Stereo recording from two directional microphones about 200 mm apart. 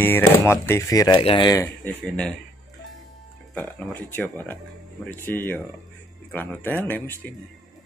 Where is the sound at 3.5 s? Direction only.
5° left (ahead or behind).